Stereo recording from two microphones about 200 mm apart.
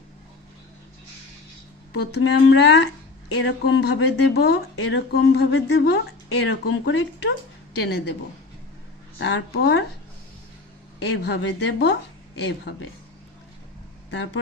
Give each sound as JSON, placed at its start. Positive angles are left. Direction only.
{"t": 1.9, "sound": "speech", "side_deg": 55}
{"t": 7.8, "sound": "speech", "side_deg": 60}
{"t": 9.1, "sound": "speech", "side_deg": 60}
{"t": 11.0, "sound": "speech", "side_deg": 60}